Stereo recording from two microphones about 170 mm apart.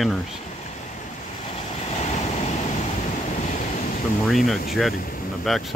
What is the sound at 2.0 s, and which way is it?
Vehicle, 40° left (ahead or behind).